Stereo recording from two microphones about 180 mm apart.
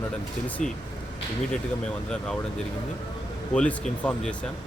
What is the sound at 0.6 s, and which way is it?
Speech, 40° left (ahead or behind).